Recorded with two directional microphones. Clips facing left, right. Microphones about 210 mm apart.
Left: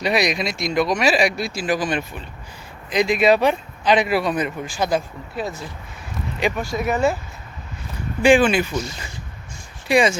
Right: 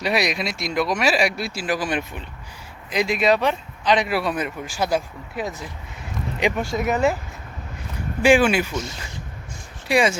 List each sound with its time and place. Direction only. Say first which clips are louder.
0.0 s speech: left 2 dB; 5° right (ahead or behind)
8.2 s speech: left 1 dB; 10° right (ahead or behind)
9.9 s speech: left 2 dB; 5° right (ahead or behind)